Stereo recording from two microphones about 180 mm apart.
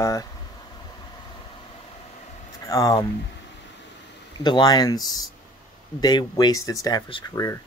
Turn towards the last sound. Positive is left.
turn(degrees=20)  # may be behind; listen again after turning